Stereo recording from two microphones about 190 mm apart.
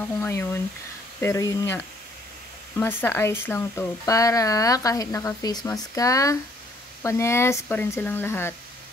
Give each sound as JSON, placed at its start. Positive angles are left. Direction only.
{"t": 0.2, "sound": "speech", "side_deg": 10}